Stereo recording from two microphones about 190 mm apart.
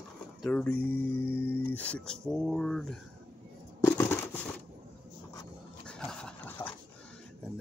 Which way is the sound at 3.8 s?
10° left (ahead or behind).